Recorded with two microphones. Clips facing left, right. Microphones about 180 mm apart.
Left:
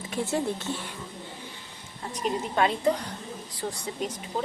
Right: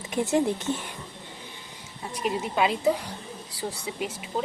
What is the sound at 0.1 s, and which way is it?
Speech, 20° right (ahead or behind).